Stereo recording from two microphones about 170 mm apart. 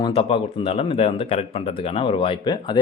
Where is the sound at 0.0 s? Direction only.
30° left (ahead or behind).